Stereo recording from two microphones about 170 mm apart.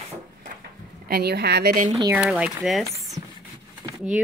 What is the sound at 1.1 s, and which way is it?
Speech, 70° right (ahead or behind).